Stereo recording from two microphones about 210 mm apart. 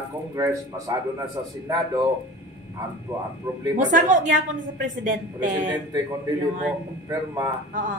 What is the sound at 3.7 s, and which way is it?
Speech, 35° right (ahead or behind).